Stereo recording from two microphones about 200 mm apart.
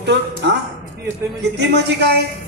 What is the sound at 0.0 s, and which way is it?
Speech, 55° right (ahead or behind).